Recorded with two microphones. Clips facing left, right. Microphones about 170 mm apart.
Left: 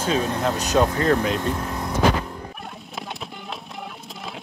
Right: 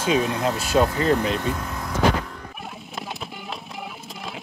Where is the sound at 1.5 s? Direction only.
25° left (ahead or behind).